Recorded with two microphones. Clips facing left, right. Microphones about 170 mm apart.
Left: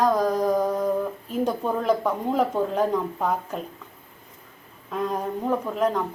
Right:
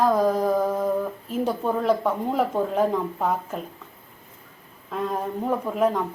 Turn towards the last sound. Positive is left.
turn(degrees=-5)  # may be behind; listen again after turning